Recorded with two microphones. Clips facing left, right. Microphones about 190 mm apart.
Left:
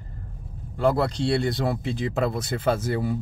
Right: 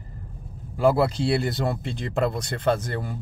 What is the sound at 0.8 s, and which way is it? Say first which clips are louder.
Speech: right 2 dB; 5° right (ahead or behind).